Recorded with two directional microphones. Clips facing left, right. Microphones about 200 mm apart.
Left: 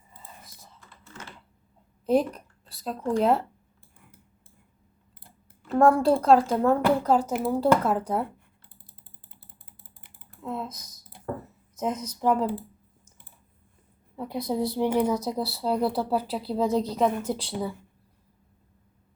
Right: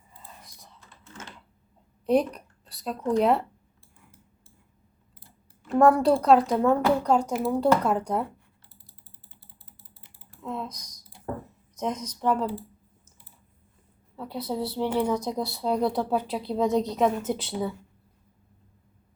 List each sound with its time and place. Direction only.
0.4 s computer keyboard: centre (ahead or behind)
2.0 s a sound: centre (ahead or behind)
3.1 s speech: centre (ahead or behind)
5.6 s speech: centre (ahead or behind)
9.3 s typing: 55° left (ahead or behind)
10.4 s speech: 5° left (ahead or behind)
14.2 s speech: 15° left (ahead or behind)